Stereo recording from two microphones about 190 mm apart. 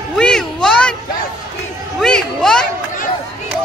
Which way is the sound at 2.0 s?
5° left (ahead or behind).